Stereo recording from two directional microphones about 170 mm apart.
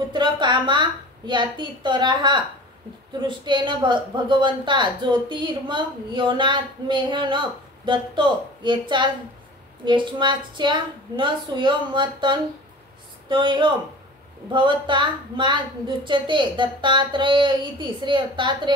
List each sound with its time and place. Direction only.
0.1 s a woman's voice: 25° right (ahead or behind)